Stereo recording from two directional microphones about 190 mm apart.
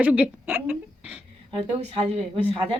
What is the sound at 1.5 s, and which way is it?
Speech, 30° right (ahead or behind).